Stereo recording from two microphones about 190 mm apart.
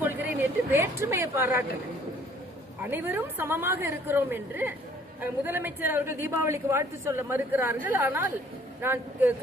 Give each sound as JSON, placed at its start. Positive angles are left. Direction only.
{"t": 0.0, "sound": "speech", "side_deg": -10}
{"t": 2.8, "sound": "a woman's voice", "side_deg": -10}